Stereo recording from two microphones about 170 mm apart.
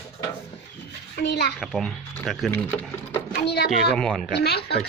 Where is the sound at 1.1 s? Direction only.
85° left.